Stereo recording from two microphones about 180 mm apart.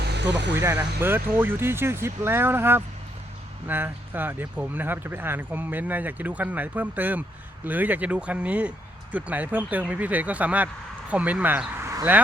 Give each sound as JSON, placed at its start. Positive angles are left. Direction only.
{"t": 0.0, "sound": "music", "side_deg": -70}
{"t": 0.5, "sound": "speech", "side_deg": -10}